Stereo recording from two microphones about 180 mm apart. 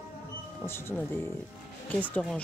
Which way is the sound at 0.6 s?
15° left (ahead or behind).